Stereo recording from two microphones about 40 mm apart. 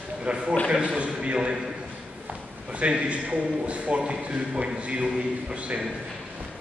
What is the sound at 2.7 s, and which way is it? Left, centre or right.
A man's voice, right.